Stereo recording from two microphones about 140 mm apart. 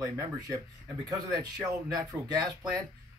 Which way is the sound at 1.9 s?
25° right (ahead or behind).